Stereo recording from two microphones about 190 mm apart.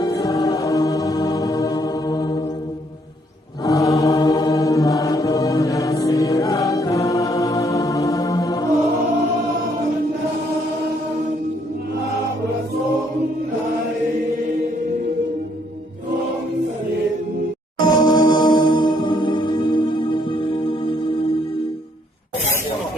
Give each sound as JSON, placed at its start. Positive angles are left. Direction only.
{"t": 0.0, "sound": "music", "side_deg": 20}
{"t": 3.6, "sound": "chant", "side_deg": 20}
{"t": 17.7, "sound": "music", "side_deg": 20}